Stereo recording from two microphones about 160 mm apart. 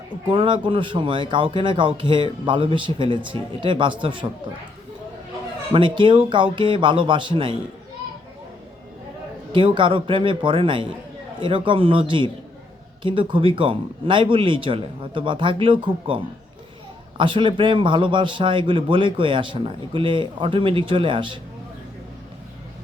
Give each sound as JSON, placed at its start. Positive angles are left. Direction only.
{"t": 0.3, "sound": "a man's voice", "side_deg": -30}
{"t": 5.7, "sound": "a man's voice", "side_deg": -30}
{"t": 9.5, "sound": "a man's voice", "side_deg": -30}